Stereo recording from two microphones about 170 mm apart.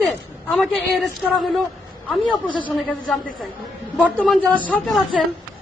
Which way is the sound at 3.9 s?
10° left (ahead or behind).